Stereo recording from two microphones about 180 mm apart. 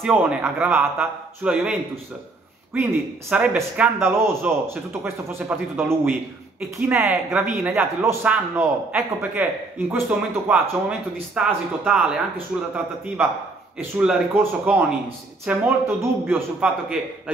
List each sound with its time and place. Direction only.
0.0 s a man's voice: 10° right (ahead or behind)